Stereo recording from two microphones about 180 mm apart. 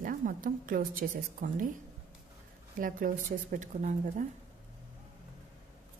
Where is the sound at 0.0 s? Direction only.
50° right (ahead or behind).